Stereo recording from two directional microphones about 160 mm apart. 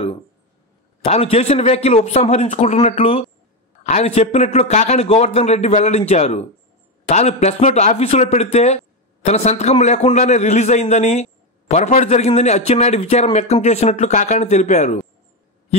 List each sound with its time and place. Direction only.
1.0 s a man's voice: 40° left (ahead or behind)